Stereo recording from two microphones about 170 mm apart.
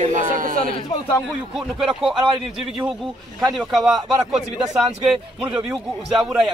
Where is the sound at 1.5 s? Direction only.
Centre (ahead or behind).